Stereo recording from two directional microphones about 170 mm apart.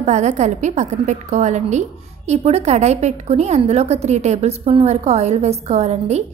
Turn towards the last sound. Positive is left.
turn(degrees=-40)  # may be behind; listen again after turning